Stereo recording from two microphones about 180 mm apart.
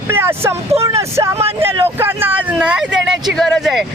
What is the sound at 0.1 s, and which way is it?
Speech, 15° right (ahead or behind).